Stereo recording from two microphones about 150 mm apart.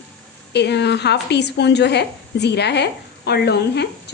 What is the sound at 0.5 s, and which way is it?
A woman's voice, 90° left.